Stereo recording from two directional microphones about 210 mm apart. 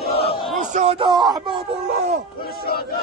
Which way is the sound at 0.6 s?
30° right (ahead or behind).